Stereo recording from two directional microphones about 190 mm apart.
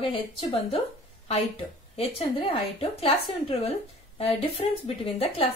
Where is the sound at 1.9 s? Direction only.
30° left (ahead or behind).